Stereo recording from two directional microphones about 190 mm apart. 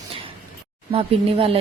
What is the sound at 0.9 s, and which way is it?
Speech, 30° right (ahead or behind).